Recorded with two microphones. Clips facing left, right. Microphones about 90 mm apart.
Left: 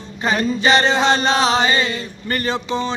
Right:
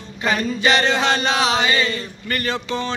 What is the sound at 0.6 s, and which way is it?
Speech, 25° left (ahead or behind).